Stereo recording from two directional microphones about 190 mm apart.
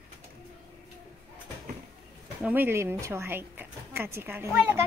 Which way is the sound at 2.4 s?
10° right (ahead or behind).